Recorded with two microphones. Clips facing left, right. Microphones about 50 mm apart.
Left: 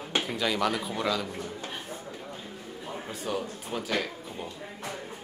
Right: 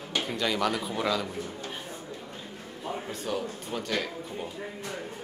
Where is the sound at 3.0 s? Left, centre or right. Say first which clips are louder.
Left 2 dB; centre.